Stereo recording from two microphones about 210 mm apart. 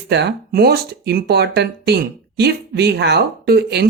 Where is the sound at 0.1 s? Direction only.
55° right (ahead or behind).